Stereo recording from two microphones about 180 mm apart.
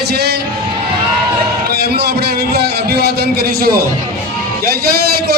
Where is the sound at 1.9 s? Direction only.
60° right (ahead or behind).